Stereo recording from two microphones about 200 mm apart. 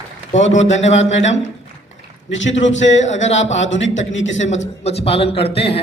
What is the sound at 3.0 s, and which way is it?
Speech, 35° left (ahead or behind).